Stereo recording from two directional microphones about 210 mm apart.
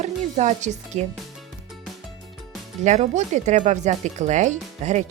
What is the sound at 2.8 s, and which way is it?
Speech, 35° right (ahead or behind).